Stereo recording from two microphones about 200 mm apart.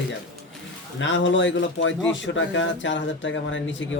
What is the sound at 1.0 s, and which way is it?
A man's voice, 65° left (ahead or behind).